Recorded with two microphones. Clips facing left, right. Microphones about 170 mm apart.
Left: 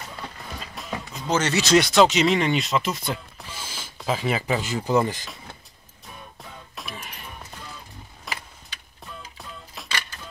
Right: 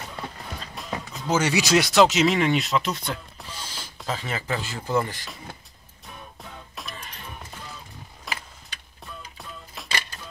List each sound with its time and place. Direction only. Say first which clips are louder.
0.6 s music: left 1 dB; centre (ahead or behind)
1.8 s speech: even; 5° right (ahead or behind)
4.2 s speech: left 5 dB; 15° left (ahead or behind)
6.7 s music: left 4 dB; 5° left (ahead or behind)
8.3 s vehicle: right 1 dB; centre (ahead or behind)
9.8 s music: right 1 dB; centre (ahead or behind)